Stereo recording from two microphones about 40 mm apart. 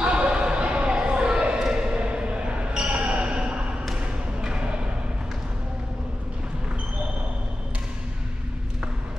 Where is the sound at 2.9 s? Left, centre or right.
Right.